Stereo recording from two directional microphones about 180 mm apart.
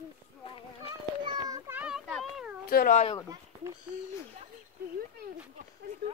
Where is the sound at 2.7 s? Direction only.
55° left (ahead or behind).